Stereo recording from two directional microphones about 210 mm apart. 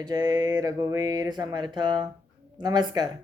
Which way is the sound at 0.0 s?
20° right (ahead or behind).